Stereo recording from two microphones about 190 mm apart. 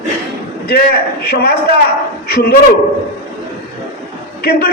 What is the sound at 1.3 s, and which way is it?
A man's voice, 55° left (ahead or behind).